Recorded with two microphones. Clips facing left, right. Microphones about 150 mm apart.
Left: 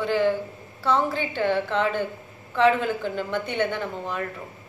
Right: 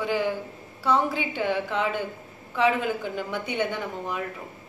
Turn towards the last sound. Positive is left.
turn(degrees=-10)  # may be behind; listen again after turning